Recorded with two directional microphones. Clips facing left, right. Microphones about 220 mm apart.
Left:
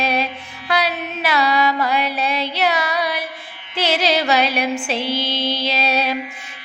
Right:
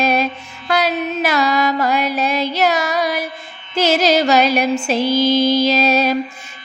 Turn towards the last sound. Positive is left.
turn(degrees=-45)  # may be behind; listen again after turning